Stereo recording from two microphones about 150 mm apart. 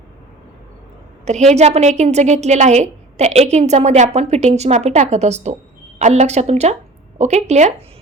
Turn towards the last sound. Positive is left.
turn(degrees=-50)  # may be behind; listen again after turning